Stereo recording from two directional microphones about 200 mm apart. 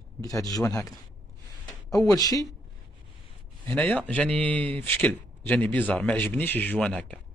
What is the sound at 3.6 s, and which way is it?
Speech, 10° left (ahead or behind).